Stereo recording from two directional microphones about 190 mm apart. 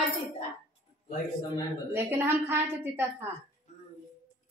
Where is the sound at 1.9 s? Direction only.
10° right (ahead or behind).